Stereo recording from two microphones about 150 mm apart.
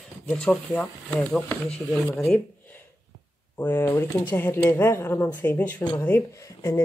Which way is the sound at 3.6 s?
15° left (ahead or behind).